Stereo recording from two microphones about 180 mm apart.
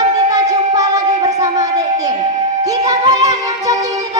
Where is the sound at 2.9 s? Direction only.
20° right (ahead or behind).